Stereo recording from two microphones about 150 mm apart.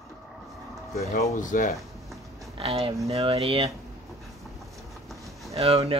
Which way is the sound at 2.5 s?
40° right (ahead or behind).